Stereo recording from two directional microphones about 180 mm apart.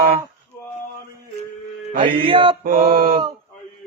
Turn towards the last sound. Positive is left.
turn(degrees=-55)  # may be behind; listen again after turning